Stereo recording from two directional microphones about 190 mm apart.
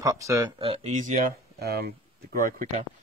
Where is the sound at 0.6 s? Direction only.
30° right (ahead or behind); by 1.9 s 55° right (ahead or behind).